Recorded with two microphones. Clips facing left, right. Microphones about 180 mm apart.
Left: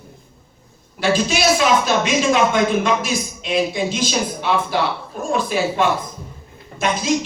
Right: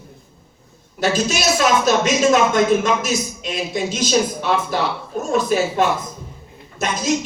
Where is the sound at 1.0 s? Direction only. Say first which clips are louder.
Left 1 dB; 45° right (ahead or behind).